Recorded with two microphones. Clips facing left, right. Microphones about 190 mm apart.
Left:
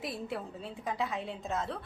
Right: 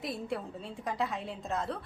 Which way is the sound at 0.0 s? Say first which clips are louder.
Right 1 dB; centre (ahead or behind).